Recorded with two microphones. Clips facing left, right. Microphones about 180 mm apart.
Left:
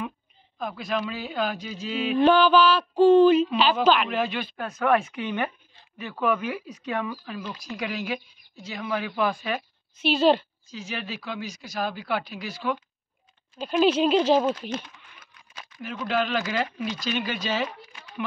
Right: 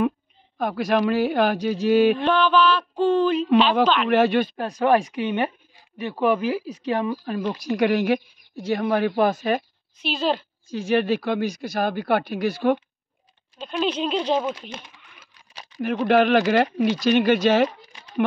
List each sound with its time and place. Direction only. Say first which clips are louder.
0.6 s speech: right 7 dB; 75° right (ahead or behind)
2.1 s mantra: left 2 dB; 5° left (ahead or behind)
4.1 s speech: right 9 dB; 70° right (ahead or behind)
4.6 s speech: right 4 dB; 35° right (ahead or behind)
7.5 s speech: right 13 dB; 70° right (ahead or behind); by 9.7 s 45° right (ahead or behind)
9.9 s mantra: left 4 dB; centre (ahead or behind)
10.7 s speech: right 14 dB; 55° right (ahead or behind)
13.6 s mantra: left 4 dB; 5° left (ahead or behind)
15.5 s a sound: right 1 dB; 30° right (ahead or behind)
15.8 s speech: right 9 dB; 60° right (ahead or behind)
17.6 s a sound: right 3 dB; 35° right (ahead or behind)